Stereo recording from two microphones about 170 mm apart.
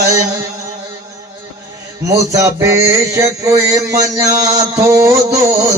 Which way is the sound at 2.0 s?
20° right (ahead or behind).